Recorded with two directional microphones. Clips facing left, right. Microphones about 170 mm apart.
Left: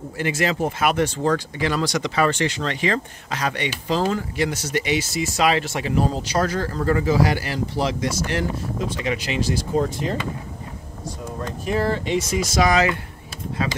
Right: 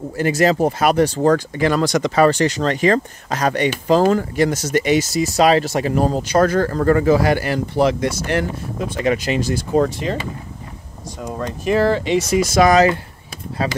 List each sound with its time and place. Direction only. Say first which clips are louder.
0.2 s speech: right 7 dB; 40° right (ahead or behind)
9.8 s speech: right 6 dB; 85° right
11.2 s speech: right 7 dB; 85° right; by 12.7 s 60° right (ahead or behind)
12.7 s speech: right 6 dB; 35° right (ahead or behind)